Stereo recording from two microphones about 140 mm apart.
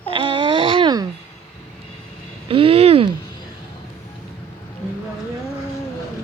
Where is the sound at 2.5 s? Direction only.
40° right (ahead or behind).